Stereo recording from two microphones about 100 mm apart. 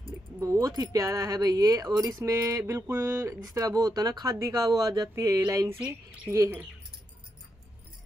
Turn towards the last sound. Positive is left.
turn(degrees=-30)  # may be behind; listen again after turning